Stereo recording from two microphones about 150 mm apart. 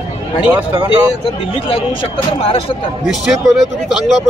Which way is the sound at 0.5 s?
30° right (ahead or behind).